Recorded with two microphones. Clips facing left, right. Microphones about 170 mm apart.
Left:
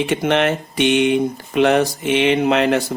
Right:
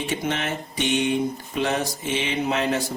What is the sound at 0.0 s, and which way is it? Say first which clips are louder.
Speech: left 9 dB; 75° left (ahead or behind).